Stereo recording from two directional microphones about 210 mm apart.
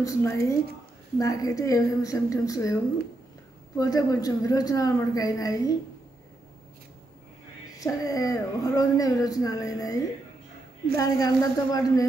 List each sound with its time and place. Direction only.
0.0 s speech: 15° left (ahead or behind)
3.7 s speech: 15° left (ahead or behind)
7.8 s speech: 15° left (ahead or behind)
11.0 s speech: 15° left (ahead or behind)